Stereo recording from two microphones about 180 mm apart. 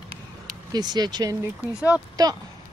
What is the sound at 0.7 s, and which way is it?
Speech, 20° right (ahead or behind).